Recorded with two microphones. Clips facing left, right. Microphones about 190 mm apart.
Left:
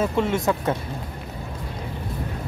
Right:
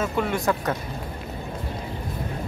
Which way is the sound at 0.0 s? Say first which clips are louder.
Left 3 dB; 25° left (ahead or behind).